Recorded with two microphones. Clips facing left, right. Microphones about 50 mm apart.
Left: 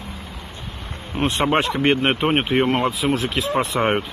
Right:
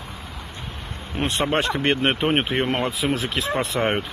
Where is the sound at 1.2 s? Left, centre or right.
Centre.